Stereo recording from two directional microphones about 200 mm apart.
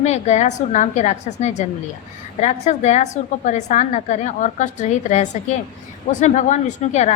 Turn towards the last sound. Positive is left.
turn(degrees=35)  # may be behind; listen again after turning